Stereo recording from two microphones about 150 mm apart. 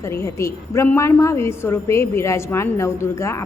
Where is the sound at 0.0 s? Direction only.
20° left (ahead or behind).